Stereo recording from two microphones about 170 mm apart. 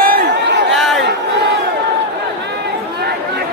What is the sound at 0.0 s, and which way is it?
Chatter, 75° right (ahead or behind).